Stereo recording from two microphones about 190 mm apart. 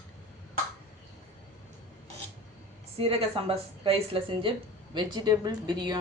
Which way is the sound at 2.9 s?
30° right (ahead or behind).